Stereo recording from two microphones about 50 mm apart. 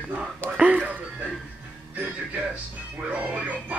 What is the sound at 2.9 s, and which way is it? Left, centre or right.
Music, right.